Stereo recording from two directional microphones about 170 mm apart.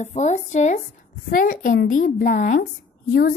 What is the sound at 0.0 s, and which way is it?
A woman's voice, 40° left (ahead or behind).